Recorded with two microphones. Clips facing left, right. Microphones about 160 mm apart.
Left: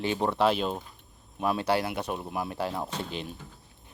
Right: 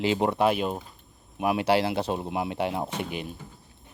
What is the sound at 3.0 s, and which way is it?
Speech, 10° right (ahead or behind).